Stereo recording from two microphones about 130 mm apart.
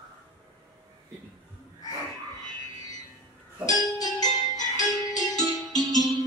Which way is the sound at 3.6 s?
30° left (ahead or behind).